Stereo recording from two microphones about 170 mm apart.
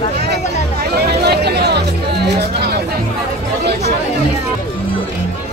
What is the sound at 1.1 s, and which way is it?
Music, 70° right (ahead or behind).